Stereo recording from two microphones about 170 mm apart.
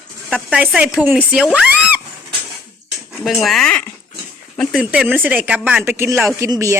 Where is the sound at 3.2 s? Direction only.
Centre (ahead or behind).